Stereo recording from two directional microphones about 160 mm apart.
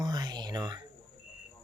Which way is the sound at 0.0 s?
25° right (ahead or behind).